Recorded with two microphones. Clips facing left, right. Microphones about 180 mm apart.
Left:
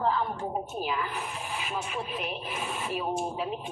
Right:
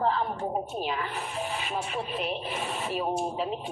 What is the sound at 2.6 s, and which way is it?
Speech, 35° right (ahead or behind).